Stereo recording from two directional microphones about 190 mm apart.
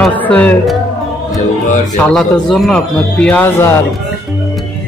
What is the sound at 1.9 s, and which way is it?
Speech, 5° left (ahead or behind).